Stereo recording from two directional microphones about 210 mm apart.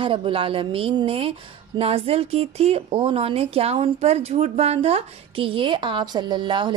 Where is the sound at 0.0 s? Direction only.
25° right (ahead or behind).